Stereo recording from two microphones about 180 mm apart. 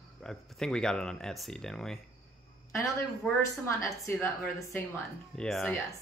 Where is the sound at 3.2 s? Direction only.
10° left (ahead or behind).